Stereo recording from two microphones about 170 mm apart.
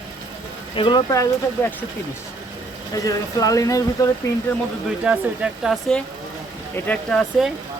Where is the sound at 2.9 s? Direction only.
20° left (ahead or behind).